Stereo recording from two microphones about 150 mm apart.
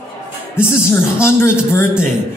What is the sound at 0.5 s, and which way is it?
Speech, 15° left (ahead or behind).